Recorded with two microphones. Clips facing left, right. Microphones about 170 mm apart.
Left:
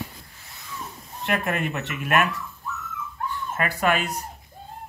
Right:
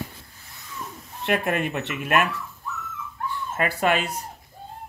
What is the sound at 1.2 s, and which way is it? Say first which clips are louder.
Speech: right 2 dB; 30° right (ahead or behind).